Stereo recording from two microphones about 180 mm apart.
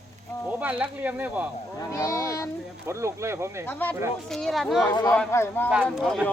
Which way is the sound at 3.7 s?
10° left (ahead or behind).